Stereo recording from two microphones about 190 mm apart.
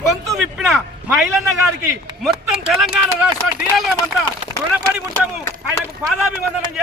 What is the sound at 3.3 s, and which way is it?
Speech, centre (ahead or behind).